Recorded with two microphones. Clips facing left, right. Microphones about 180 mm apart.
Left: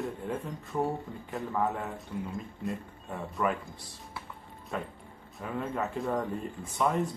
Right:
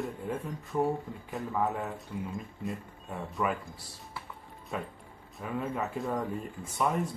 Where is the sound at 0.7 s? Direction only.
Centre (ahead or behind).